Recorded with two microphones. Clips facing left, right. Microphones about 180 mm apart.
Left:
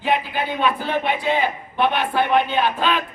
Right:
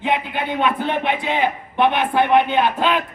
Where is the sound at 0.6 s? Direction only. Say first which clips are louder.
Right 2 dB; 20° right (ahead or behind).